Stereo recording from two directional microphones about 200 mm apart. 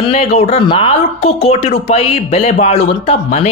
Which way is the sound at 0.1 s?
30° left (ahead or behind).